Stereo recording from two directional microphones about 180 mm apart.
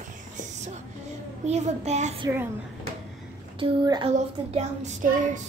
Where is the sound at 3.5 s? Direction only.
25° right (ahead or behind).